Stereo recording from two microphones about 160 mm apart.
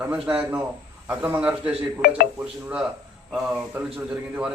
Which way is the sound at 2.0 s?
75° left (ahead or behind).